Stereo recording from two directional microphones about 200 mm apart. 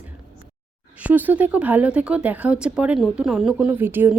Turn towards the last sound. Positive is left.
turn(degrees=-10)  # may be behind; listen again after turning